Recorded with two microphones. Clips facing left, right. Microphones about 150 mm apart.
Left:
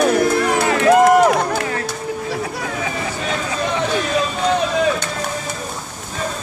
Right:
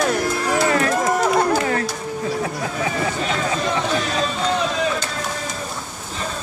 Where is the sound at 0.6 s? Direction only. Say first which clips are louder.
Left 6 dB; 75° left (ahead or behind).